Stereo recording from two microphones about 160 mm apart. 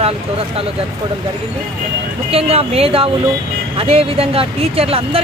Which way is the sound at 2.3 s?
40° right (ahead or behind).